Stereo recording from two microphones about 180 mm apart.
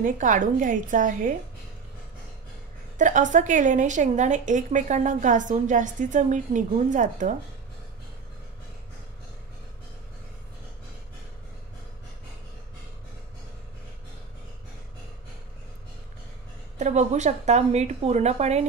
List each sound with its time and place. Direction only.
0.0 s a woman's voice: 45° right (ahead or behind)
3.0 s a woman's voice: 45° right (ahead or behind)
16.7 s a woman's voice: 40° right (ahead or behind)